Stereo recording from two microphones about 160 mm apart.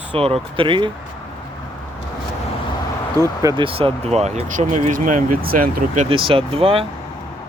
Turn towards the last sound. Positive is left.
turn(degrees=-35)  # may be behind; listen again after turning